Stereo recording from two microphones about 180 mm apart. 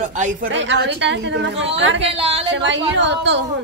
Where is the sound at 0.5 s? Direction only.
85° right.